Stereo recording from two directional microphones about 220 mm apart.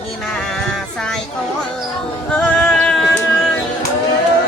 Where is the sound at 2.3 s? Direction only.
5° left (ahead or behind).